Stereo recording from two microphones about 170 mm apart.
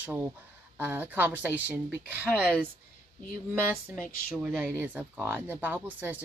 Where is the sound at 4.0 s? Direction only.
5° left (ahead or behind).